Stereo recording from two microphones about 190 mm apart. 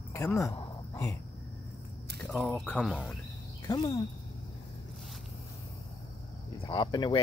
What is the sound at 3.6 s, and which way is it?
Speech, 20° left (ahead or behind).